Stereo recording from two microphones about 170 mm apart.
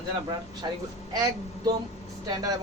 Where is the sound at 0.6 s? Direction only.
25° right (ahead or behind).